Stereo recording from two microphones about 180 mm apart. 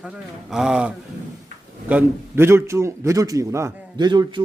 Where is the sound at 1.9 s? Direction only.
15° right (ahead or behind).